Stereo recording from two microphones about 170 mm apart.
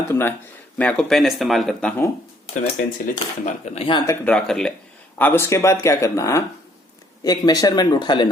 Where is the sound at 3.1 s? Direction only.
55° left (ahead or behind).